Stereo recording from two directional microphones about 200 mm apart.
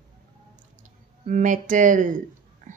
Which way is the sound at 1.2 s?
40° right (ahead or behind).